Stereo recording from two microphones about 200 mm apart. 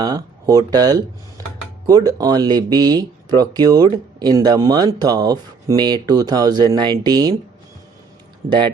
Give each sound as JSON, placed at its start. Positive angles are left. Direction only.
{"t": 0.0, "sound": "speech", "side_deg": -20}
{"t": 8.4, "sound": "speech", "side_deg": -25}